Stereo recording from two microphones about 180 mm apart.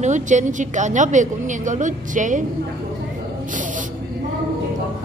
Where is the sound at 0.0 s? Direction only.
40° right (ahead or behind).